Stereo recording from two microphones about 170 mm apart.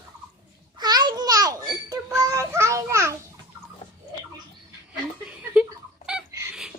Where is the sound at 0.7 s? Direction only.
25° right (ahead or behind).